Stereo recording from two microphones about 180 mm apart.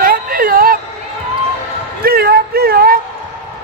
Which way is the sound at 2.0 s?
60° right (ahead or behind).